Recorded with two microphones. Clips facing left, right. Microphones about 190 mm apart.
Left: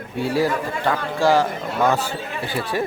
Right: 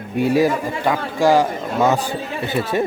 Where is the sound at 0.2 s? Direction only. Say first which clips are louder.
Right 4 dB; 15° right (ahead or behind).